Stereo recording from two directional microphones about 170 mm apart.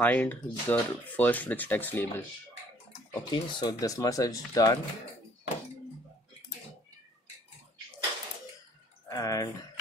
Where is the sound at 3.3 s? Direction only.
25° left (ahead or behind).